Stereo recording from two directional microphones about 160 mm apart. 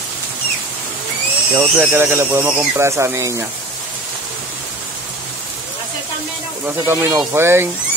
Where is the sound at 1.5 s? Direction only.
15° right (ahead or behind).